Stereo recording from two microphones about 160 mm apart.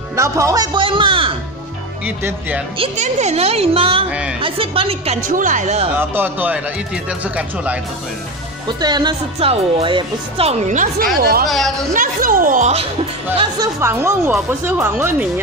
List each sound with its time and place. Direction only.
0.1 s speech: 20° right (ahead or behind)
2.0 s speech: 10° right (ahead or behind)
2.8 s speech: 45° right (ahead or behind)
5.2 s speech: 55° right (ahead or behind)
5.9 s speech: 10° right (ahead or behind)
8.6 s speech: 25° right (ahead or behind); by 11.1 s 50° right (ahead or behind)
11.1 s speech: 70° right (ahead or behind)
11.4 s a woman's voice: centre (ahead or behind)
11.9 s speech: 60° right (ahead or behind)
13.7 s speech: 15° right (ahead or behind)